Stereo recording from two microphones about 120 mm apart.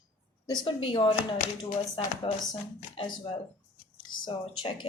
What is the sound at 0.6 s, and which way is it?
Speech, 45° left (ahead or behind).